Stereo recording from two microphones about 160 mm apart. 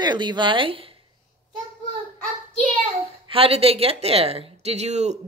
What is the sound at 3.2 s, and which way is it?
Speech, 35° right (ahead or behind).